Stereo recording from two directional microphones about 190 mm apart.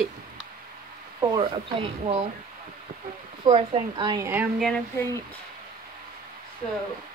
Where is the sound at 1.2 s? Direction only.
25° right (ahead or behind).